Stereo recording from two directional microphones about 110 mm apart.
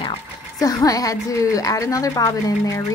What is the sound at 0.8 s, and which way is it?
Speech, 35° left (ahead or behind).